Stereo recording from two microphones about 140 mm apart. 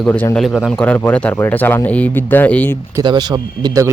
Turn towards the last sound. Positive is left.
turn(degrees=-25)  # may be behind; listen again after turning